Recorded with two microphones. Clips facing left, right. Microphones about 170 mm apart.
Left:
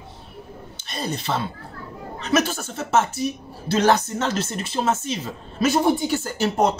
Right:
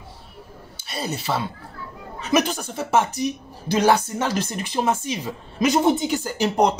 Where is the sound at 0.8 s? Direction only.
10° right (ahead or behind).